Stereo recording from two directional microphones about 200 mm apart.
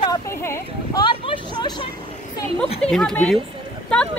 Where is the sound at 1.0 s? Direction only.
25° left (ahead or behind).